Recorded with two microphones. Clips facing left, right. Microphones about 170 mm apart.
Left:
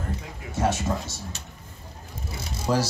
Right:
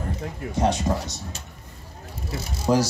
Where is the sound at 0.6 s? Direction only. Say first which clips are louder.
Right 2 dB; 15° right (ahead or behind).